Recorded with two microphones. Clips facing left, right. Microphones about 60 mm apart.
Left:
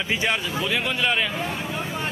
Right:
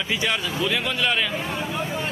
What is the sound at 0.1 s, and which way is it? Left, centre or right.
Speech, left.